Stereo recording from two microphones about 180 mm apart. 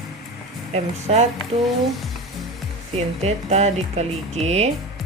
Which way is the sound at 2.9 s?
35° right (ahead or behind).